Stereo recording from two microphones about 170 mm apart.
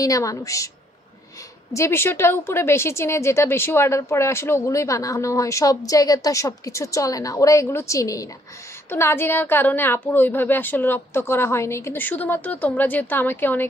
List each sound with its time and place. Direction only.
0.0 s a woman's voice: 20° left (ahead or behind)
1.7 s a woman's voice: 15° left (ahead or behind)